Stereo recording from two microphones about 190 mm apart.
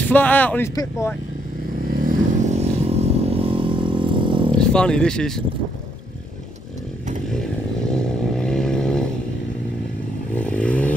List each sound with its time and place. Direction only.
0.0 s speech: 10° left (ahead or behind)
1.9 s motorcycle: 50° right (ahead or behind); by 4.6 s 25° right (ahead or behind)
4.6 s speech: 5° left (ahead or behind)
7.9 s vehicle: 5° left (ahead or behind)
10.3 s vehicle: 5° left (ahead or behind)